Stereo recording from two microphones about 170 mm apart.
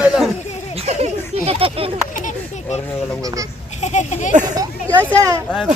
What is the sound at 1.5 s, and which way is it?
Speech, 35° right (ahead or behind).